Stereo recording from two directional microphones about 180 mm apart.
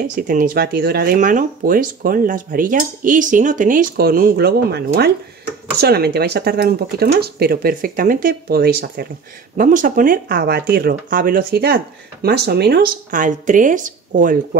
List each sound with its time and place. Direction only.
0.1 s speech: 50° right (ahead or behind)
9.6 s speech: 50° right (ahead or behind)